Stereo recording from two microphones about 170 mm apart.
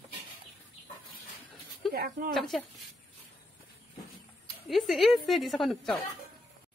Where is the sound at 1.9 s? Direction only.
60° right (ahead or behind).